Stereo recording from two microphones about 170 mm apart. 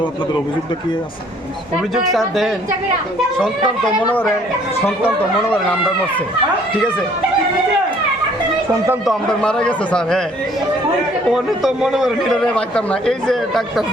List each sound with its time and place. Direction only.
2.1 s a man's voice: centre (ahead or behind)
9.0 s a man's voice: 5° left (ahead or behind)
11.3 s a man's voice: centre (ahead or behind)